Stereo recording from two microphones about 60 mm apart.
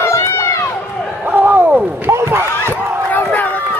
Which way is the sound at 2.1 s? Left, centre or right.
Right.